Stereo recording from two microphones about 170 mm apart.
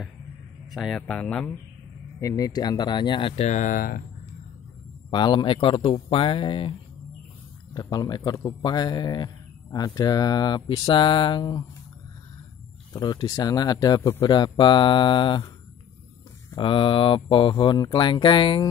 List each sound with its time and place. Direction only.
0.7 s speech: centre (ahead or behind)
2.1 s speech: 20° left (ahead or behind); by 4.0 s 55° left (ahead or behind)
5.1 s speech: 25° left (ahead or behind)
7.7 s speech: 25° left (ahead or behind)
12.9 s speech: 25° left (ahead or behind)
16.5 s speech: 30° left (ahead or behind)